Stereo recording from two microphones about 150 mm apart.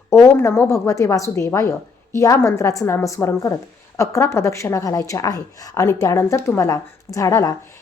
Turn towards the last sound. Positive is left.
turn(degrees=20)  # may be behind; listen again after turning